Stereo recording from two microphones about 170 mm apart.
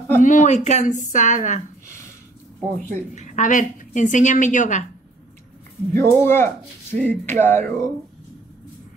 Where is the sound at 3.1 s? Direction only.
45° left (ahead or behind).